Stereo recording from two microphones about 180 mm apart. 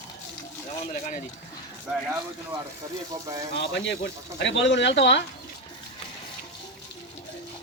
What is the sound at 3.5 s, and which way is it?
Speech, 85° left.